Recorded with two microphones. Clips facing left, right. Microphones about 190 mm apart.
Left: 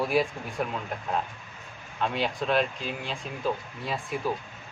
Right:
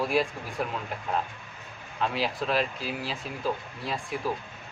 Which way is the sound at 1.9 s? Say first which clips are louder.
Even; centre (ahead or behind).